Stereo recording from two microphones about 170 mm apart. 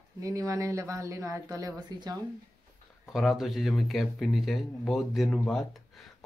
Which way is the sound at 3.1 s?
Centre (ahead or behind).